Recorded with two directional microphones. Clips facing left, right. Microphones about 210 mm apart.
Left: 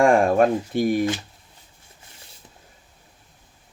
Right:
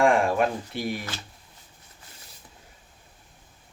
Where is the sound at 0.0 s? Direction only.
45° left (ahead or behind).